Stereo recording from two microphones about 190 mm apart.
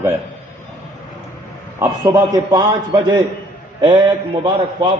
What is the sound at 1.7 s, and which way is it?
A man's voice, 15° right (ahead or behind).